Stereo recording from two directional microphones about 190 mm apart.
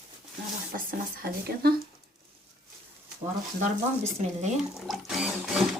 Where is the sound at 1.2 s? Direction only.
55° right (ahead or behind).